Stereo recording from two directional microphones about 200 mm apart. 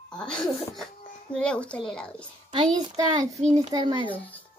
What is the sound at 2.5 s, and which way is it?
A child's voice, 20° right (ahead or behind).